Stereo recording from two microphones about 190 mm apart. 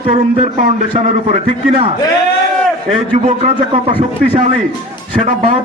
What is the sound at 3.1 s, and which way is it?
A man's voice, 35° right (ahead or behind).